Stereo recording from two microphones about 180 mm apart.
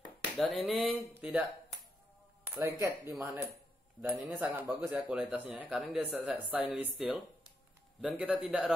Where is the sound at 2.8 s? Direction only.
15° right (ahead or behind).